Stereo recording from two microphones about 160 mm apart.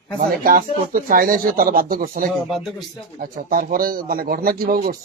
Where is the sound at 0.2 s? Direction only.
60° right (ahead or behind).